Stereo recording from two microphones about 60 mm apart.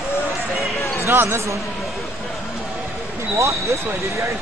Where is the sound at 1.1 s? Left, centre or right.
Right.